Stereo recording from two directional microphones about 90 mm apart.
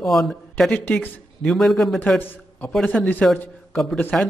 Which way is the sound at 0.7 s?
20° left (ahead or behind).